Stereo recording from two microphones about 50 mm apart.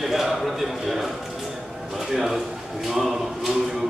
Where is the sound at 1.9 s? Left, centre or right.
Centre.